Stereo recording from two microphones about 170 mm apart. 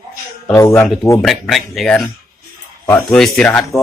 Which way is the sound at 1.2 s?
Centre (ahead or behind).